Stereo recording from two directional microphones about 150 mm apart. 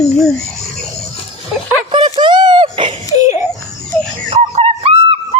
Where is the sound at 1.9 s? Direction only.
35° right (ahead or behind).